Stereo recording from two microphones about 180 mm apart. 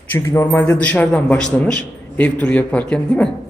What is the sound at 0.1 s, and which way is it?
A man's voice, 15° left (ahead or behind).